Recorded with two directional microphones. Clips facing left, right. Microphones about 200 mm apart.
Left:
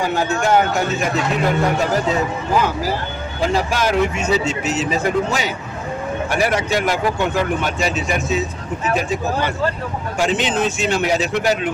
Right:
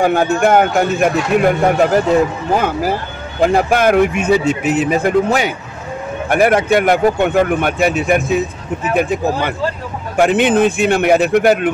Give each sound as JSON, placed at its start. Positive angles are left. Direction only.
{"t": 0.0, "sound": "speech", "side_deg": -55}